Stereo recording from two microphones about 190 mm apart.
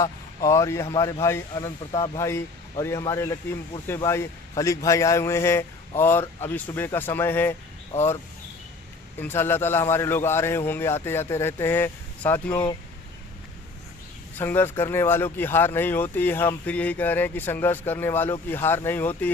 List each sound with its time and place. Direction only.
0.0 s a man's voice: 15° left (ahead or behind)
9.2 s speech: 10° left (ahead or behind)
14.3 s speech: 10° left (ahead or behind)